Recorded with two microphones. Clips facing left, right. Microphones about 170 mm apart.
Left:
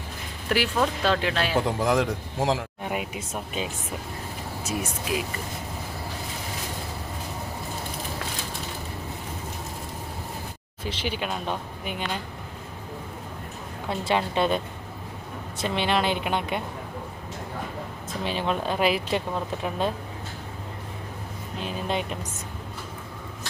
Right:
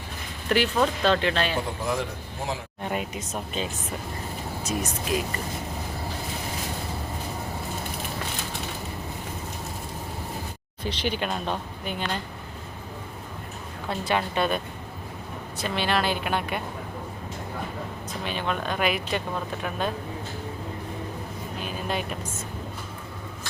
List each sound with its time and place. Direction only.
0.4 s speech: 5° left (ahead or behind)
1.6 s a man's voice: 90° left
2.8 s speech: 10° left (ahead or behind)
10.8 s speech: 5° left (ahead or behind)
14.0 s speech: 25° left (ahead or behind)
18.1 s speech: 30° left (ahead or behind)
21.6 s speech: 25° left (ahead or behind)